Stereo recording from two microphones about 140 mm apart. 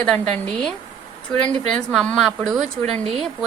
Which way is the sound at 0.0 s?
5° left (ahead or behind).